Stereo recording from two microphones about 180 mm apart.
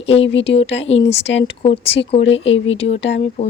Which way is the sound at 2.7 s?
35° left (ahead or behind).